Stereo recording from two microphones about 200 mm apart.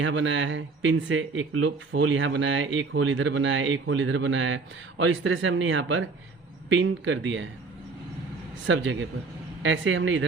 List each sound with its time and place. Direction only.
0.0 s speech: 70° right (ahead or behind)
8.6 s speech: 70° right (ahead or behind)